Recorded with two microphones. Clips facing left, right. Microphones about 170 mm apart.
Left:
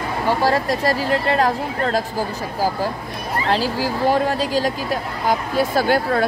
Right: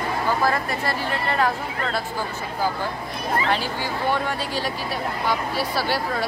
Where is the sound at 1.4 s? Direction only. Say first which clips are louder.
Left 4 dB; 40° left (ahead or behind).